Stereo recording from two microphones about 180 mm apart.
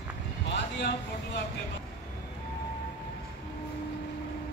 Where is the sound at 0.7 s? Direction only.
70° left (ahead or behind).